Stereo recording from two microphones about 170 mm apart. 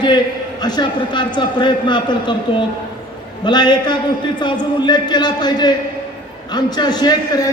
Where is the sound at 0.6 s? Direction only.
25° left (ahead or behind).